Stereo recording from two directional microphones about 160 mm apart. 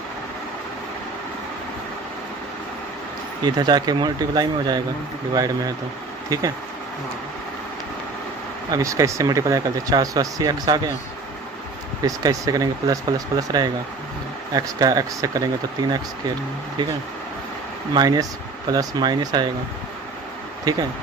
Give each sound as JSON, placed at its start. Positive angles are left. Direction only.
{"t": 3.4, "sound": "speech", "side_deg": -25}
{"t": 8.6, "sound": "speech", "side_deg": -20}
{"t": 12.0, "sound": "speech", "side_deg": -25}
{"t": 17.9, "sound": "speech", "side_deg": -25}
{"t": 20.7, "sound": "speech", "side_deg": -25}